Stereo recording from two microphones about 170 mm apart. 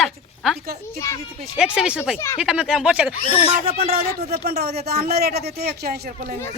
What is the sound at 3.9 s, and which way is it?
Speech, 65° right (ahead or behind).